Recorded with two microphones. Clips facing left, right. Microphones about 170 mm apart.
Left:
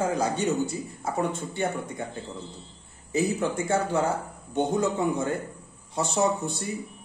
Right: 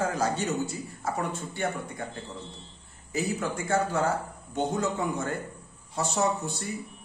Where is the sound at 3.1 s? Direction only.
25° left (ahead or behind).